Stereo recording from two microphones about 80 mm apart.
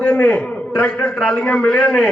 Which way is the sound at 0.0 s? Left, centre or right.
Left.